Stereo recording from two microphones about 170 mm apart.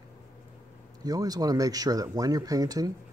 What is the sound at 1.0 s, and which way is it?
Speech, 20° right (ahead or behind).